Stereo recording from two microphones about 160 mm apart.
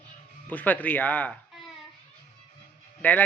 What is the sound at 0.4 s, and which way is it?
Speech, 10° left (ahead or behind).